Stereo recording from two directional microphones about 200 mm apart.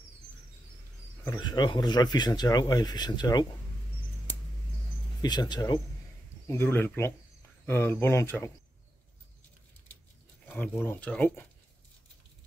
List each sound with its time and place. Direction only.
1.4 s speech: 20° left (ahead or behind)
5.2 s speech: 20° left (ahead or behind)
10.5 s speech: 10° left (ahead or behind)